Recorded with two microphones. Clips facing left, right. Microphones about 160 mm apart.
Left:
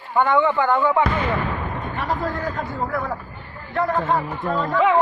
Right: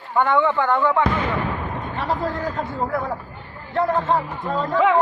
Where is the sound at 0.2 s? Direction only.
Centre (ahead or behind).